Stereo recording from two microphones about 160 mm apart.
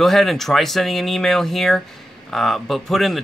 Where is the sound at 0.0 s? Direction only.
Centre (ahead or behind).